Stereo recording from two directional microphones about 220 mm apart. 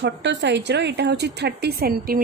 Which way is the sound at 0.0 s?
55° right (ahead or behind).